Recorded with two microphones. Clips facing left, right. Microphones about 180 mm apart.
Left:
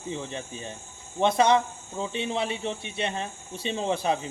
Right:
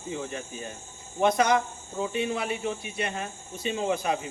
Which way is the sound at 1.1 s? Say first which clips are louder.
Left 1 dB; 25° left (ahead or behind).